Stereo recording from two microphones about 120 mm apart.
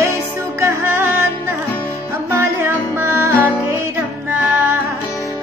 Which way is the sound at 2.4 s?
20° right (ahead or behind).